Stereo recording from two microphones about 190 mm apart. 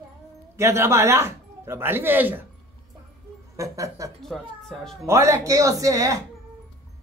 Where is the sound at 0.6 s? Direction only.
15° right (ahead or behind).